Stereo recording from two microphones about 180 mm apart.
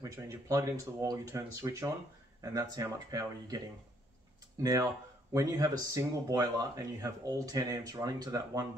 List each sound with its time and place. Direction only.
0.0 s speech: 15° right (ahead or behind)
5.3 s speech: 20° right (ahead or behind)